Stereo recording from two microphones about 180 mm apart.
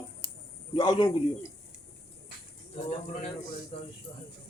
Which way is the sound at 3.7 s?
35° left (ahead or behind).